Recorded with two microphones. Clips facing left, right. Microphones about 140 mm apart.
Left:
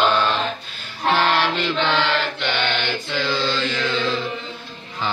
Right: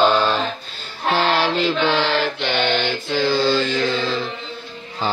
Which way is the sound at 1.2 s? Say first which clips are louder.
Right 3 dB; 35° right (ahead or behind).